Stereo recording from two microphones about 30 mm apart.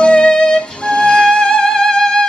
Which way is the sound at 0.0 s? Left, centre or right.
Left.